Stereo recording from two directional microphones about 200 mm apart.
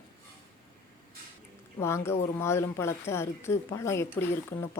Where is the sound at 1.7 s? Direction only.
15° left (ahead or behind).